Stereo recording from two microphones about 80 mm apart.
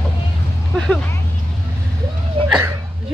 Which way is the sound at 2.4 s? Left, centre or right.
Right.